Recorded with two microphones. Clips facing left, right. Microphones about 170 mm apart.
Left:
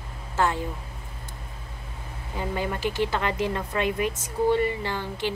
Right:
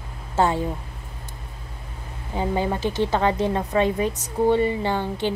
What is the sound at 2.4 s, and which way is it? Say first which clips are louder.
A woman's voice: right 5 dB; 25° right (ahead or behind).